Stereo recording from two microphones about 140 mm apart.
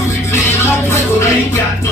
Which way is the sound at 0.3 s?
20° left (ahead or behind).